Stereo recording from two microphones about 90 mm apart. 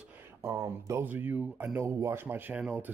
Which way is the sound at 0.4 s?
35° right (ahead or behind).